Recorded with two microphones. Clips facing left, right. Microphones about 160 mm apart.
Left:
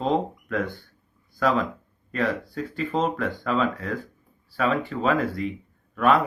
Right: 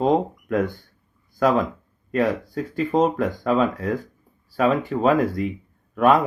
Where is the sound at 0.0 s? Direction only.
45° right (ahead or behind).